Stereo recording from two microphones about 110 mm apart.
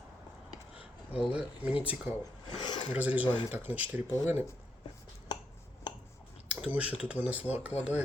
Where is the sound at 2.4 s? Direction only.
40° left (ahead or behind).